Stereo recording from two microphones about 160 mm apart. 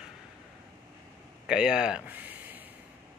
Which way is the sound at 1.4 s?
5° right (ahead or behind).